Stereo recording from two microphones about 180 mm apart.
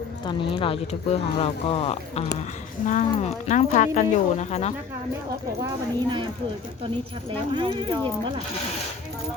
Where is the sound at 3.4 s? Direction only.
40° left (ahead or behind).